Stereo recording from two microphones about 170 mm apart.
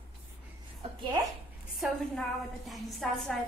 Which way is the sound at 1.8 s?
Centre (ahead or behind).